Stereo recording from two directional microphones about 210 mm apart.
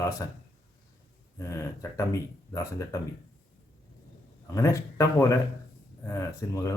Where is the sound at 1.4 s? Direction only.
15° left (ahead or behind).